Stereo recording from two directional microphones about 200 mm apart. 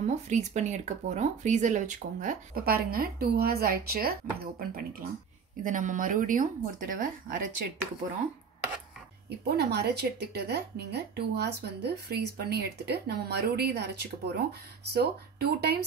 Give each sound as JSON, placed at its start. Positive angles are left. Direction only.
{"t": 0.0, "sound": "speech", "side_deg": -35}
{"t": 9.4, "sound": "a woman's voice", "side_deg": -55}